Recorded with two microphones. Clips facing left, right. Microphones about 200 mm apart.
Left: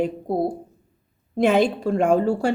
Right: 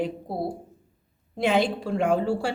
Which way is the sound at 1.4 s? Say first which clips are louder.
Left 5 dB; 50° left (ahead or behind).